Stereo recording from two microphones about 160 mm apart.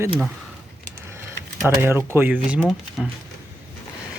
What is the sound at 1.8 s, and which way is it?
Speech, 15° right (ahead or behind).